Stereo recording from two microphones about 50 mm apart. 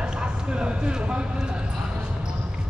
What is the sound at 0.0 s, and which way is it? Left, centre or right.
A man's voice, centre.